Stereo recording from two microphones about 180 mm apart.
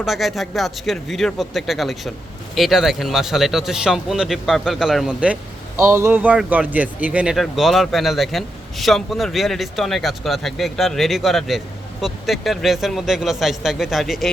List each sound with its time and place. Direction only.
0.0 s speech: centre (ahead or behind)